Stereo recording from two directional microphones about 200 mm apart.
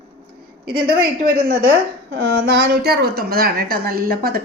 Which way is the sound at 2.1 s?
55° right (ahead or behind).